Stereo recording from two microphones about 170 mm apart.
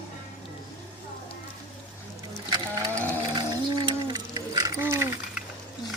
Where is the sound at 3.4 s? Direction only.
25° right (ahead or behind).